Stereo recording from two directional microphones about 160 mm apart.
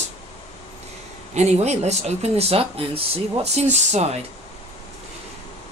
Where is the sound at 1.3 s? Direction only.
45° right (ahead or behind).